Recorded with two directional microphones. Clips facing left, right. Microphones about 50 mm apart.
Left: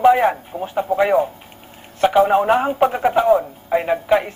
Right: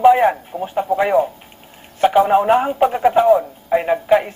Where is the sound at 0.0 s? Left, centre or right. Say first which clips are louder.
Right 2 dB; centre.